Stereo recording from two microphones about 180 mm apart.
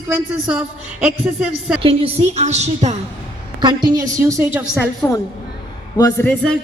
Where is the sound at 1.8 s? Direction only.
30° right (ahead or behind).